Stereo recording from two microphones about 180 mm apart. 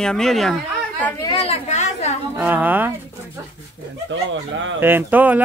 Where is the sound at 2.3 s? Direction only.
10° right (ahead or behind).